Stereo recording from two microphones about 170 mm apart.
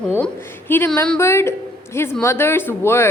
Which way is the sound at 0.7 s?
10° left (ahead or behind).